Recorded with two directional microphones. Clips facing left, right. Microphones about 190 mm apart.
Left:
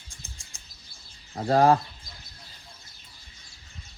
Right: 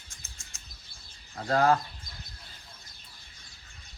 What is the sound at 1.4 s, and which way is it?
Speech, 30° left (ahead or behind).